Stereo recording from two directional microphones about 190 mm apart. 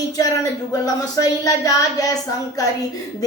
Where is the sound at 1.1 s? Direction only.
15° left (ahead or behind).